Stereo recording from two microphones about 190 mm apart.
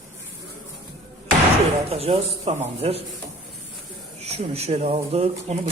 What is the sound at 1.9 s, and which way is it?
A man's voice, 30° right (ahead or behind).